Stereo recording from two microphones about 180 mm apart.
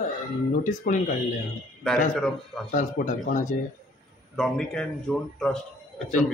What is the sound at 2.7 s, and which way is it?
Speech, 45° left (ahead or behind).